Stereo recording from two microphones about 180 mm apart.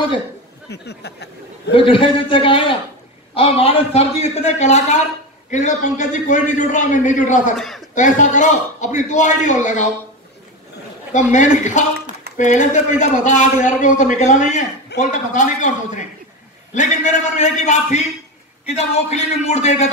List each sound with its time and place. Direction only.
0.7 s a sound: 65° left (ahead or behind)
1.7 s a man's voice: 30° left (ahead or behind)
7.5 s a man's voice: centre (ahead or behind)
7.9 s a man's voice: 45° left (ahead or behind)
11.1 s a man's voice: 40° left (ahead or behind)